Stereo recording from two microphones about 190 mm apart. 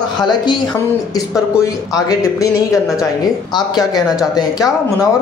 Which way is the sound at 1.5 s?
15° left (ahead or behind).